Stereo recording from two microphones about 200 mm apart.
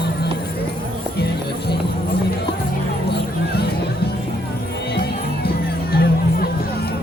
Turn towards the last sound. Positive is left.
turn(degrees=50)  # may be behind; listen again after turning